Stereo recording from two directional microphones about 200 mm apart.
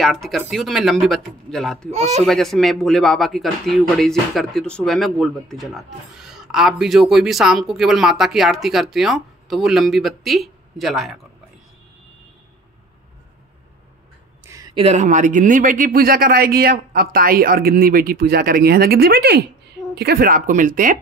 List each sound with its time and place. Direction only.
0.0 s speech: centre (ahead or behind)
14.4 s a sound: 15° right (ahead or behind)
14.8 s speech: 35° right (ahead or behind)